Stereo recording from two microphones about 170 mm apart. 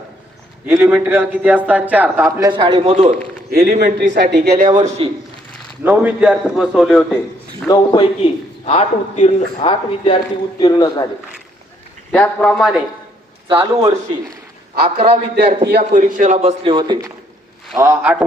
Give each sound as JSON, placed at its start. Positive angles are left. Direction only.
{"t": 0.6, "sound": "a man's voice", "side_deg": -10}
{"t": 2.5, "sound": "a man's voice", "side_deg": -25}
{"t": 3.5, "sound": "a man's voice", "side_deg": -60}
{"t": 3.9, "sound": "speech", "side_deg": -90}
{"t": 4.4, "sound": "a man's voice", "side_deg": -55}
{"t": 5.8, "sound": "a man's voice", "side_deg": -10}
{"t": 7.7, "sound": "a man's voice", "side_deg": 25}
{"t": 12.1, "sound": "a man's voice", "side_deg": 10}
{"t": 13.5, "sound": "a man's voice", "side_deg": -25}
{"t": 14.8, "sound": "a man's voice", "side_deg": -40}
{"t": 15.6, "sound": "a man's voice", "side_deg": -60}
{"t": 16.7, "sound": "a man's voice", "side_deg": -25}
{"t": 17.7, "sound": "a man's voice", "side_deg": -15}